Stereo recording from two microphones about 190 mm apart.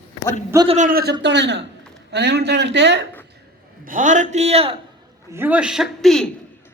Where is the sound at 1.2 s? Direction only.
65° right (ahead or behind).